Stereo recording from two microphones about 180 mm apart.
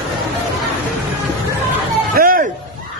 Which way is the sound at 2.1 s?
55° right (ahead or behind).